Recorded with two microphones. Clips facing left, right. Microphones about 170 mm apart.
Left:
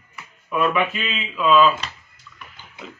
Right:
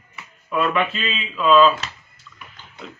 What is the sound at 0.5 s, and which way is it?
A man's voice, 10° left (ahead or behind).